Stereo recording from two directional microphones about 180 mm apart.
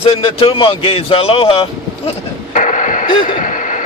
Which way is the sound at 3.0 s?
25° left (ahead or behind).